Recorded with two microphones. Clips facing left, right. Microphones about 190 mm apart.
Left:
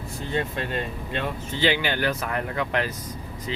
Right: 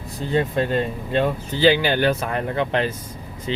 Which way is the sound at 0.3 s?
35° right (ahead or behind).